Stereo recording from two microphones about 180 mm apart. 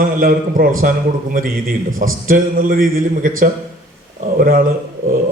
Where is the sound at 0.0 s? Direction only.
50° right (ahead or behind).